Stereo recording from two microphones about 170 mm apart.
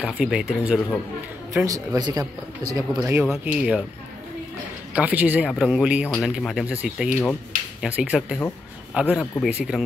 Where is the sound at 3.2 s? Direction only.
5° right (ahead or behind).